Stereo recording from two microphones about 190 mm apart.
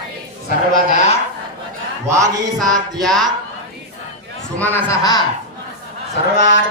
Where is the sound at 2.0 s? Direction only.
15° right (ahead or behind).